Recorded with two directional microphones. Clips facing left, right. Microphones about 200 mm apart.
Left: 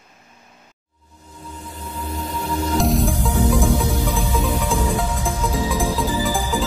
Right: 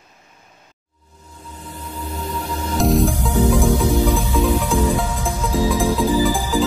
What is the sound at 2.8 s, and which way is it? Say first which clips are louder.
Music: right 6 dB; centre (ahead or behind).